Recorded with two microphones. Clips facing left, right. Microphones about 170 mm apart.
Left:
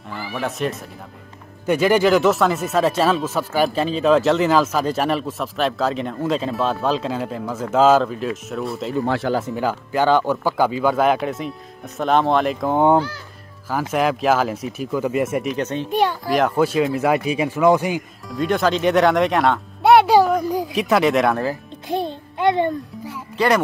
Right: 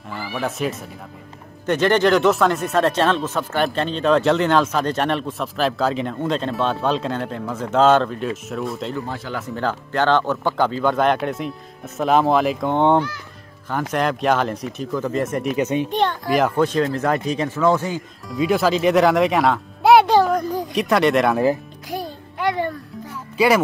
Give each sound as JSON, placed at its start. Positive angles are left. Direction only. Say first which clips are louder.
{"t": 0.1, "sound": "speech", "louder": "even", "side_deg": 0}
{"t": 9.0, "sound": "speech", "louder": "left 9 dB", "side_deg": 75}
{"t": 9.5, "sound": "speech", "louder": "left 2 dB", "side_deg": 10}
{"t": 15.5, "sound": "a child's voice", "louder": "right 3 dB", "side_deg": -10}
{"t": 15.9, "sound": "a child's voice", "louder": "left 1 dB", "side_deg": 10}
{"t": 18.3, "sound": "speech", "louder": "right 1 dB", "side_deg": -5}
{"t": 20.2, "sound": "a sound", "louder": "left 1 dB", "side_deg": 5}
{"t": 21.8, "sound": "music", "louder": "left 6 dB", "side_deg": 25}
{"t": 23.3, "sound": "speech", "louder": "right 1 dB", "side_deg": -10}